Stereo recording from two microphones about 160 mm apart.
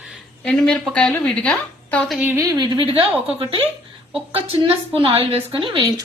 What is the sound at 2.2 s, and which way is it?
A woman's voice, 15° right (ahead or behind).